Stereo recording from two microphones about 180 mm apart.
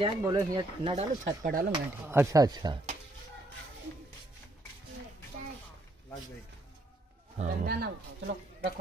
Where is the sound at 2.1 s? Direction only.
15° right (ahead or behind).